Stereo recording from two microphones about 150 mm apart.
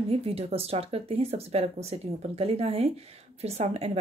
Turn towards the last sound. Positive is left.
turn(degrees=-45)  # may be behind; listen again after turning